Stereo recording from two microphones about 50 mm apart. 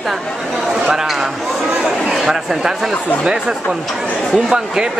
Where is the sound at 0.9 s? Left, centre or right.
Centre.